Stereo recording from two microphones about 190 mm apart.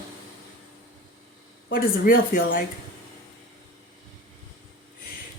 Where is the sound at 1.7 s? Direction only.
50° left (ahead or behind).